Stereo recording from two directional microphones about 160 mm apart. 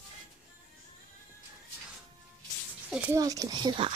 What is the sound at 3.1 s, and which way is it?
Speech, 20° right (ahead or behind).